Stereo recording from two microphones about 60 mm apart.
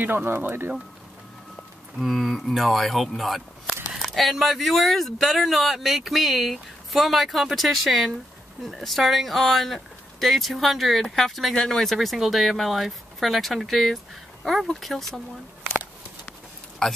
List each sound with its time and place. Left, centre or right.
0.0 s speech: right
2.0 s speech: centre
16.8 s speech: centre